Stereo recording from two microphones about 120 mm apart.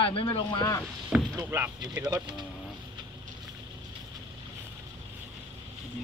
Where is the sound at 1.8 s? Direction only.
30° right (ahead or behind).